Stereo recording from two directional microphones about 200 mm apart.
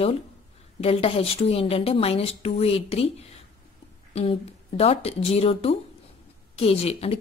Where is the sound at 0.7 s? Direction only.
30° left (ahead or behind).